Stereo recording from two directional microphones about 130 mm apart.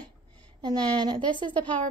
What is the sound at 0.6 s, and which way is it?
Speech, 35° right (ahead or behind).